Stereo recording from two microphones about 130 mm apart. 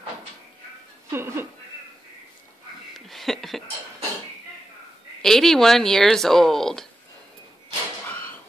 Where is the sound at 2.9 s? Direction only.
Centre (ahead or behind).